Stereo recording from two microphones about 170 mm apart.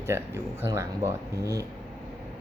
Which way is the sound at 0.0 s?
15° right (ahead or behind).